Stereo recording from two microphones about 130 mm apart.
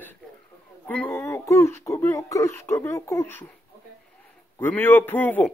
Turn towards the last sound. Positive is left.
turn(degrees=15)  # may be behind; listen again after turning